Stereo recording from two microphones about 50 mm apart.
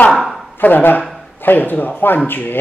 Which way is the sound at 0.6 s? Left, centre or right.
Left.